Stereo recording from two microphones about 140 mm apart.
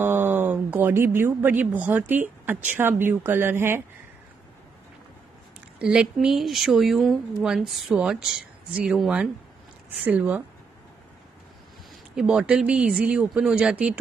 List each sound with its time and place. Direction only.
0.0 s speech: 15° right (ahead or behind)
5.8 s speech: 5° right (ahead or behind)
12.2 s speech: 5° right (ahead or behind)